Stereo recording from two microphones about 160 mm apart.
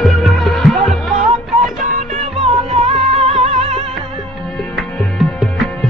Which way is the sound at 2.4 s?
40° right (ahead or behind).